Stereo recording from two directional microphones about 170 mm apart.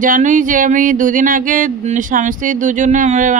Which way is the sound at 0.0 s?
50° right (ahead or behind).